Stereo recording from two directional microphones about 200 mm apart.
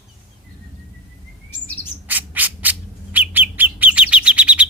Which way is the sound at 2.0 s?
10° right (ahead or behind).